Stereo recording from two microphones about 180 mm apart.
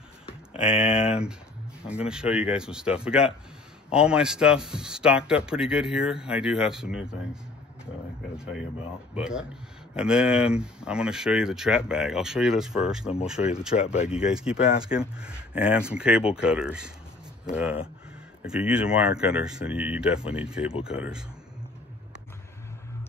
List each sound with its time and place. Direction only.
0.6 s speech: 5° right (ahead or behind)
0.8 s speech: 30° left (ahead or behind)
2.0 s speech: 5° right (ahead or behind)
8.4 s speech: 5° right (ahead or behind)
13.7 s speech: 35° left (ahead or behind)
14.3 s speech: 5° right (ahead or behind)
18.4 s speech: 5° right (ahead or behind)